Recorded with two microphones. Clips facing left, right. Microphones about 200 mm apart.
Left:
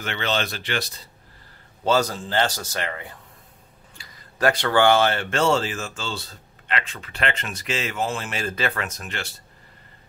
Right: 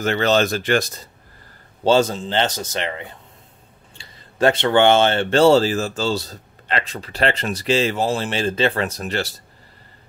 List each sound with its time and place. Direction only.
0.0 s speech: 40° right (ahead or behind)
1.9 s a man's voice: 25° right (ahead or behind)